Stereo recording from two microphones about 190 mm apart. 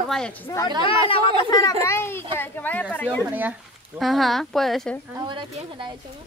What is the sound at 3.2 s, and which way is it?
Speech, 10° right (ahead or behind).